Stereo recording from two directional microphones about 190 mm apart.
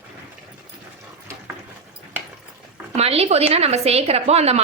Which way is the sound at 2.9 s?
35° right (ahead or behind).